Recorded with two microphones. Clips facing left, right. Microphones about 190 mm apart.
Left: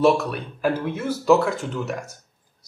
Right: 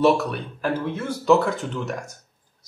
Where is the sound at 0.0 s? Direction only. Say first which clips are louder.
Even; centre (ahead or behind).